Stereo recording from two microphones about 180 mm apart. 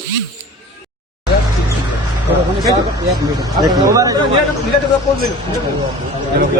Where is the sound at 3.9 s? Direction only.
20° right (ahead or behind).